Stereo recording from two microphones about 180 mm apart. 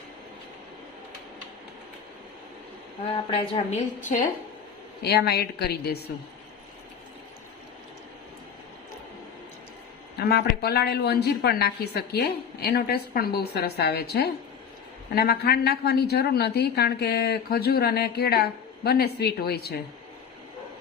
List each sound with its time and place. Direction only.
3.1 s a woman's voice: 30° left (ahead or behind)
3.7 s a woman's voice: 45° left (ahead or behind)
5.0 s a woman's voice: 60° left (ahead or behind)
10.2 s a woman's voice: 60° left (ahead or behind)